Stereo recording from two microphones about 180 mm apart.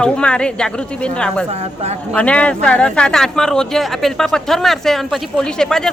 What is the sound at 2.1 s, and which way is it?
Speech, 5° left (ahead or behind).